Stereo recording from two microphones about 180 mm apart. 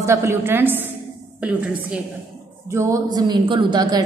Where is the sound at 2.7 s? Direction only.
15° right (ahead or behind).